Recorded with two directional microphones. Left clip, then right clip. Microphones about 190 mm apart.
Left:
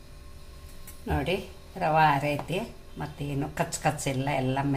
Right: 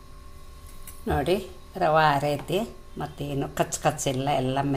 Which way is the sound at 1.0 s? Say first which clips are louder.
Right 4 dB; 35° right (ahead or behind).